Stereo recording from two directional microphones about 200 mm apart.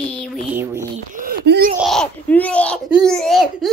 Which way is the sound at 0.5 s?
10° right (ahead or behind).